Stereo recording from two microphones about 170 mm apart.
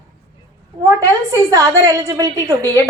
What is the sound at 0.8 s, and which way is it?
A woman's voice, 20° right (ahead or behind).